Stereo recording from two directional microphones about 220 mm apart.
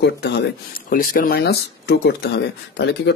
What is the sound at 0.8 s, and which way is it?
Speech, 40° left (ahead or behind).